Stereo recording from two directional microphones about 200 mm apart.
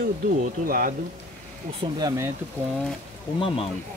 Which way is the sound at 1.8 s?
20° right (ahead or behind).